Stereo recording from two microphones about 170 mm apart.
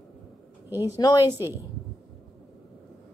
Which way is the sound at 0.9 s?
20° left (ahead or behind).